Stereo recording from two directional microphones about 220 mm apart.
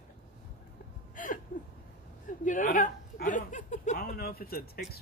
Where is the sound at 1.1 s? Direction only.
35° left (ahead or behind).